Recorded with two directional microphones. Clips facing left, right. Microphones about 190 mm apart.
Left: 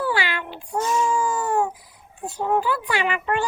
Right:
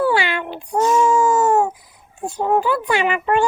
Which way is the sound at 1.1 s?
45° right (ahead or behind).